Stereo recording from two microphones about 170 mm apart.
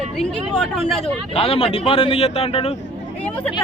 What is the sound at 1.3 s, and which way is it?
Speech, 35° left (ahead or behind).